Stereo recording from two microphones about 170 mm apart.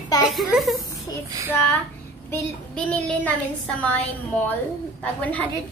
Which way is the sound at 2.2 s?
5° left (ahead or behind).